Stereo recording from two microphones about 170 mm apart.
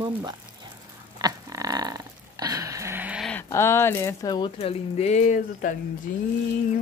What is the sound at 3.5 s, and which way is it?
Speech, 15° left (ahead or behind).